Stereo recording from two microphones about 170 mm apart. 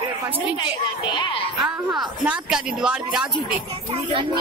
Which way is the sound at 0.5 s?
25° left (ahead or behind).